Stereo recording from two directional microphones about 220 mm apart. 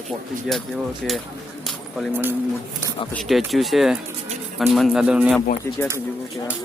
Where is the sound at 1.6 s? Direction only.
5° right (ahead or behind).